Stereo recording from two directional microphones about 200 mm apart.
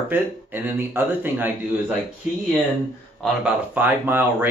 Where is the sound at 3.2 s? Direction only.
5° right (ahead or behind).